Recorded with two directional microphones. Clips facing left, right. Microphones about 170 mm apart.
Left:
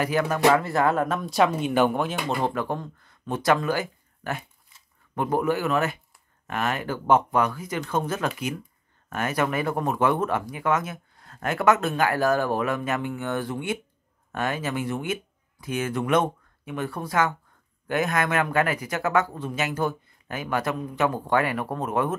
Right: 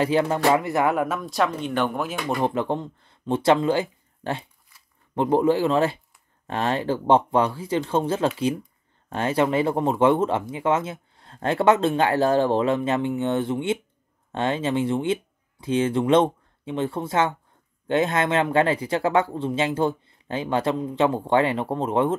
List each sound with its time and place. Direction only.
0.0 s speech: 25° right (ahead or behind); by 2.0 s 5° left (ahead or behind)
2.4 s speech: 20° right (ahead or behind)